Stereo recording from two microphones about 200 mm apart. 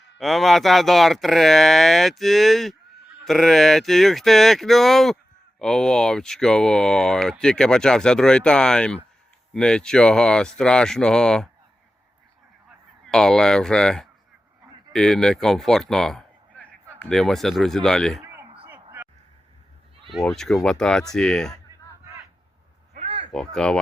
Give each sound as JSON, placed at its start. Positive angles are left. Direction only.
{"t": 0.2, "sound": "speech", "side_deg": 0}
{"t": 13.1, "sound": "a man's voice", "side_deg": 0}
{"t": 18.2, "sound": "a sound", "side_deg": -10}
{"t": 20.1, "sound": "speech", "side_deg": 0}
{"t": 23.0, "sound": "a sound", "side_deg": -35}
{"t": 23.3, "sound": "speech", "side_deg": 5}